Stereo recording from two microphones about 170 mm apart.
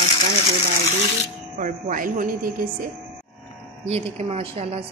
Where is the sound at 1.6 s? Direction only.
55° right (ahead or behind).